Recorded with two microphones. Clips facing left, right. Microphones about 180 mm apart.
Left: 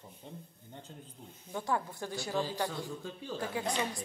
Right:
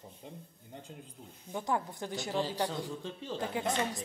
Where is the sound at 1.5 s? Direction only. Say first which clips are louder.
Right 1 dB; 20° right (ahead or behind).